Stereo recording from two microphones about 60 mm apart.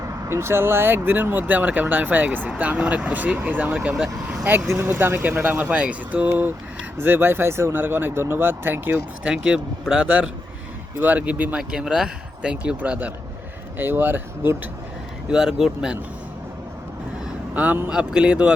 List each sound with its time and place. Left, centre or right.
0.3 s speech: right
2.6 s speech: centre; by 9.0 s right
9.2 s speech: centre
10.9 s speech: right
11.5 s speech: centre
13.7 s speech: right
15.3 s speech: centre
17.5 s speech: right
17.8 s speech: centre